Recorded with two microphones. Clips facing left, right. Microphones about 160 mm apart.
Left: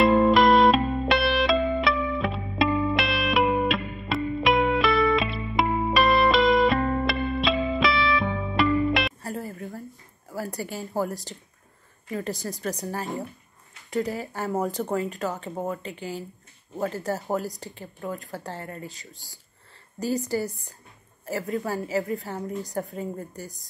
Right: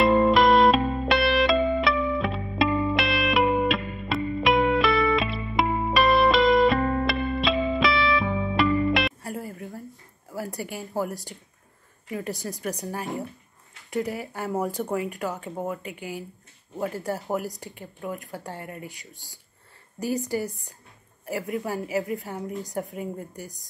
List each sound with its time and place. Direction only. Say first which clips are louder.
0.0 s music: left 1 dB; centre (ahead or behind)
9.2 s music: left 1 dB; 15° right (ahead or behind)
10.3 s a sound: left 1 dB; 15° right (ahead or behind)
12.1 s speech: left 1 dB; 15° right (ahead or behind)